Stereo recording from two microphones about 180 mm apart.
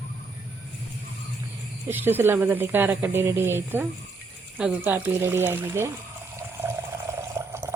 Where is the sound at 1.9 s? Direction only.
10° right (ahead or behind).